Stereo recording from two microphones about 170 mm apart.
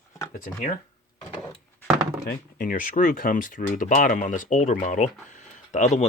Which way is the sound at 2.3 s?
60° left (ahead or behind).